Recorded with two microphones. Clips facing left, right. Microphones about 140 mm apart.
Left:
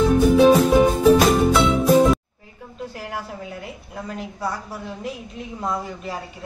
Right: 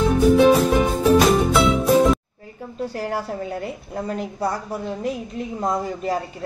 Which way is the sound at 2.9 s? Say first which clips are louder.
Right 6 dB; 35° right (ahead or behind).